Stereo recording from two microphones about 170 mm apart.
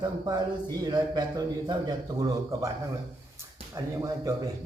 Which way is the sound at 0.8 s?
25° right (ahead or behind).